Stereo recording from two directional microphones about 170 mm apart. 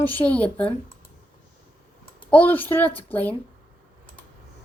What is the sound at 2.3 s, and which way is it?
Speech, 10° left (ahead or behind).